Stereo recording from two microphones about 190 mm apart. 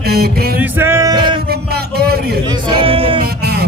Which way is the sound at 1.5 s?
55° right (ahead or behind).